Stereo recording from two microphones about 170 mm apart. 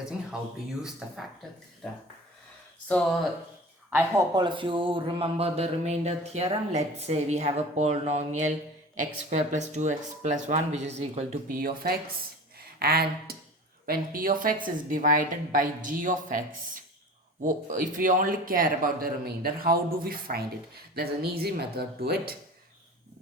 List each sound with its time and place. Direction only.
0.8 s speech: 5° right (ahead or behind)
3.9 s a man's voice: 20° right (ahead or behind); by 11.3 s 40° right (ahead or behind)
11.4 s a woman's voice: 60° right (ahead or behind)
17.4 s speech: 50° right (ahead or behind)